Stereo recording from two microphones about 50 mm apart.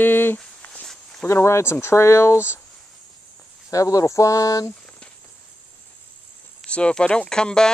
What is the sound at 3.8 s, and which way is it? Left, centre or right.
Speech, left.